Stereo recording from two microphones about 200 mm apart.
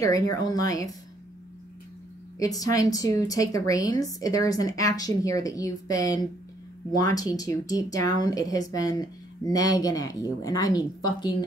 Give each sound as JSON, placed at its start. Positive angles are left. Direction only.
{"t": 0.0, "sound": "a woman's voice", "side_deg": 20}
{"t": 2.3, "sound": "a woman's voice", "side_deg": 15}